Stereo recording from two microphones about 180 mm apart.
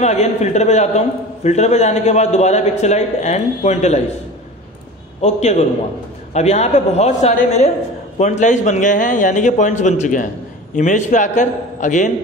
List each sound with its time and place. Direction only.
0.0 s a man's voice: 40° left (ahead or behind)
5.2 s a man's voice: 40° left (ahead or behind)